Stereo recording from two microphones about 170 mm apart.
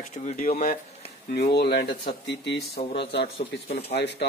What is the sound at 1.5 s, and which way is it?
Speech, 75° left (ahead or behind).